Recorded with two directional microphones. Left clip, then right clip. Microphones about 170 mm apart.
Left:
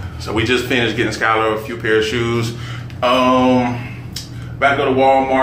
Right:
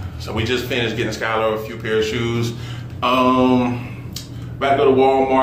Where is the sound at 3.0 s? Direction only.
5° left (ahead or behind).